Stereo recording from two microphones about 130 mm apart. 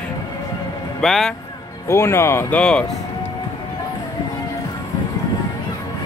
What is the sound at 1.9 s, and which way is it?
Speech, 20° left (ahead or behind).